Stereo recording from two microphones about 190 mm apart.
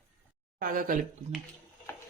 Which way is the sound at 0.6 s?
45° right (ahead or behind).